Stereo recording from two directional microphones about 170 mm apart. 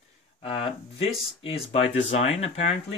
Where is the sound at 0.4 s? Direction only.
35° left (ahead or behind).